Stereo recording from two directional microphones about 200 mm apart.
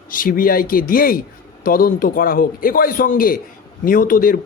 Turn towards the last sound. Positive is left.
turn(degrees=45)  # may be behind; listen again after turning